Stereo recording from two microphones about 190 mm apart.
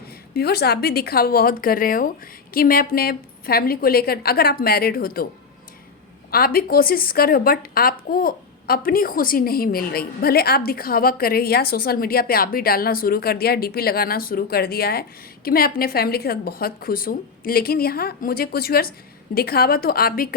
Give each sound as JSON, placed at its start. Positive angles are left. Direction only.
{"t": 0.3, "sound": "a woman's voice", "side_deg": 55}
{"t": 6.3, "sound": "a woman's voice", "side_deg": 50}